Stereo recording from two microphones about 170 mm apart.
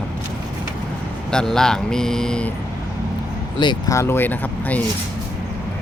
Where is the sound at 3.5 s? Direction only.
25° left (ahead or behind).